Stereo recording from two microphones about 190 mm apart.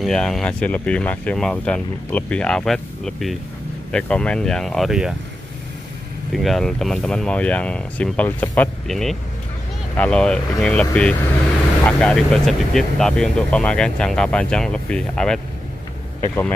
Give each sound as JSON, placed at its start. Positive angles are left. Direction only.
{"t": 0.0, "sound": "speech", "side_deg": 5}
{"t": 6.3, "sound": "speech", "side_deg": 0}